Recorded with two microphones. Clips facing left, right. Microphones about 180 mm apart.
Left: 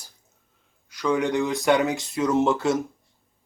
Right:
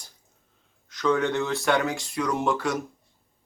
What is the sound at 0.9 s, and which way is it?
Speech, 10° left (ahead or behind).